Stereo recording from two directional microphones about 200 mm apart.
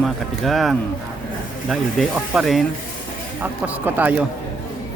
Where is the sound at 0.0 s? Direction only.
Centre (ahead or behind).